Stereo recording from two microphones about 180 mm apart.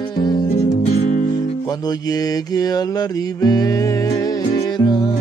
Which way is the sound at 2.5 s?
20° left (ahead or behind).